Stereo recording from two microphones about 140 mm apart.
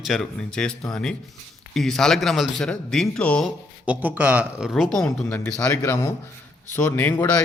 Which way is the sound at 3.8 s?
10° right (ahead or behind).